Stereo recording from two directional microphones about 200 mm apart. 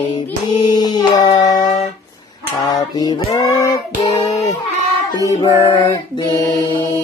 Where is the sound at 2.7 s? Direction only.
20° left (ahead or behind).